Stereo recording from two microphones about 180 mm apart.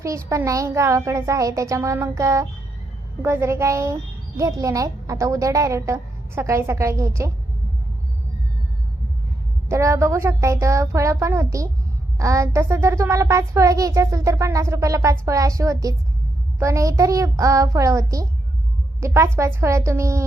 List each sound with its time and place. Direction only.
0.0 s a child's voice: 15° right (ahead or behind)
9.6 s a child's voice: 15° right (ahead or behind)